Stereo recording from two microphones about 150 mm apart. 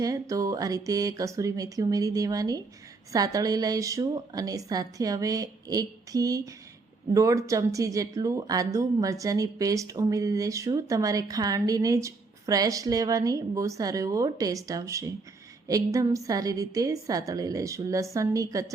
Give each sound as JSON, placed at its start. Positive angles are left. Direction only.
{"t": 0.0, "sound": "speech", "side_deg": -20}